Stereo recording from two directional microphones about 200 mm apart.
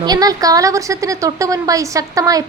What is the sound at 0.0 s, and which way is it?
A woman's voice, 20° right (ahead or behind).